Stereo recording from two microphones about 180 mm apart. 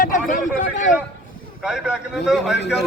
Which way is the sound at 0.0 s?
45° left (ahead or behind).